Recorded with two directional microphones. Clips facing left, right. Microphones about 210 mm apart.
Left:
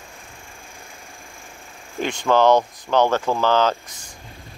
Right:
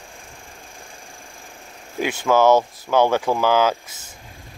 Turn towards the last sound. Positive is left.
turn(degrees=-10)  # may be behind; listen again after turning